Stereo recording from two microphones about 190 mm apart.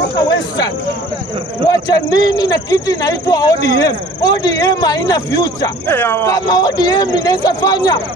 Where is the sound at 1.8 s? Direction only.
20° left (ahead or behind).